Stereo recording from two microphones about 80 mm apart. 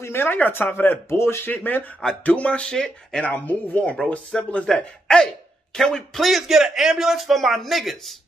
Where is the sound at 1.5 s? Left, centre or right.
Left.